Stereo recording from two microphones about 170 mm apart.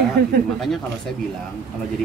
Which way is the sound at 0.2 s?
75° right (ahead or behind).